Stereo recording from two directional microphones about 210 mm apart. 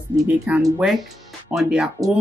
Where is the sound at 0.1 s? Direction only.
15° right (ahead or behind).